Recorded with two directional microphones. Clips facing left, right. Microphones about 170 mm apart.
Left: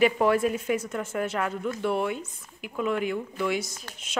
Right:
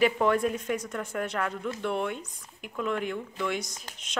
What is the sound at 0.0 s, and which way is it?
Speech, 5° left (ahead or behind).